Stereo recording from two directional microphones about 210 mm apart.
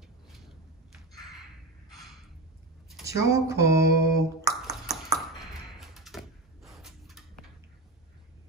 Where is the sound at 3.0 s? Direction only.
15° right (ahead or behind).